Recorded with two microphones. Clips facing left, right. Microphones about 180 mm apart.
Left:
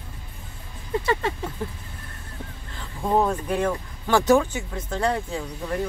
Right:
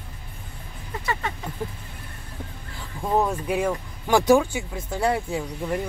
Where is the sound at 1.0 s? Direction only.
30° left (ahead or behind).